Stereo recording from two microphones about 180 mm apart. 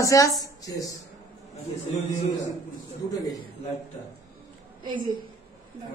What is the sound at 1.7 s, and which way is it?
Speech, 45° left (ahead or behind).